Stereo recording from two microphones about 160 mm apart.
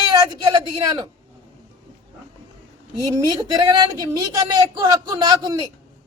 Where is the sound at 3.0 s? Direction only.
20° right (ahead or behind).